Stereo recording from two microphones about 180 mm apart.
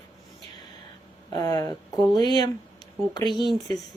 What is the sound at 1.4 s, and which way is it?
Speech, 20° left (ahead or behind).